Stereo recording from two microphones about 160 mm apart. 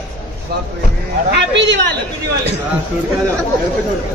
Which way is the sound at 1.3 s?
90° right.